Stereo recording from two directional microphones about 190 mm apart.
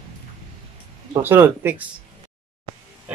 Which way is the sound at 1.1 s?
10° right (ahead or behind).